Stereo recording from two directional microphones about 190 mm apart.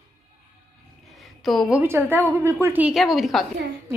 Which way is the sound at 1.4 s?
Centre (ahead or behind).